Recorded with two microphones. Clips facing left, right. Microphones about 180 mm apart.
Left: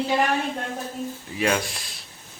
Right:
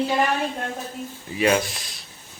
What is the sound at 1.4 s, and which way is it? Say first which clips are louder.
Speech: right 4 dB; centre (ahead or behind).